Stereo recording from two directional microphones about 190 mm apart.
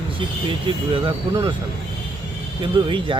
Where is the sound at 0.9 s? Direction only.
25° right (ahead or behind).